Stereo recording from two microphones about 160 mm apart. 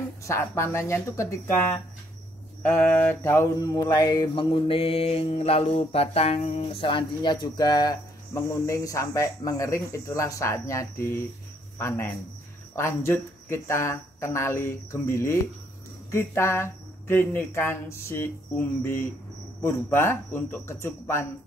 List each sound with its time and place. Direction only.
0.2 s speech: 15° left (ahead or behind)
2.6 s mantra: 10° left (ahead or behind)
12.7 s speech: 15° left (ahead or behind)